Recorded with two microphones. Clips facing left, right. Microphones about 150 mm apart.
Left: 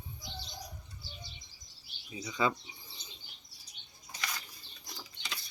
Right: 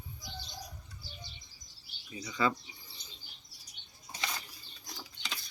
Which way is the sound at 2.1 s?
20° left (ahead or behind).